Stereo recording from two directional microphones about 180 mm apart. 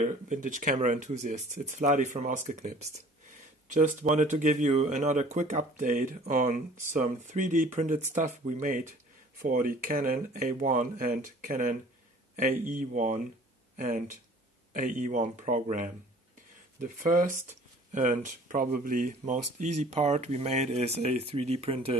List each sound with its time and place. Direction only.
0.0 s speech: 45° right (ahead or behind)